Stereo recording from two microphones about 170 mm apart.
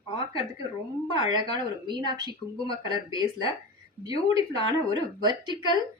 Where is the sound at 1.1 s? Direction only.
25° right (ahead or behind).